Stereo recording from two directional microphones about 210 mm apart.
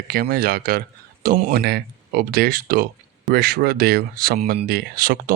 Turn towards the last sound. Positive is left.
turn(degrees=-45)  # may be behind; listen again after turning